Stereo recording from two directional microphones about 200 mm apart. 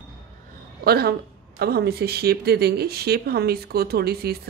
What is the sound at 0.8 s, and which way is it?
Speech, 50° right (ahead or behind).